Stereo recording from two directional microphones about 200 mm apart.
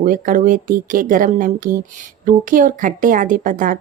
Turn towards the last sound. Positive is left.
turn(degrees=-40)  # may be behind; listen again after turning